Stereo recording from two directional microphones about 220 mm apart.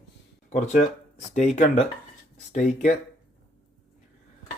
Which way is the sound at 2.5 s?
35° left (ahead or behind).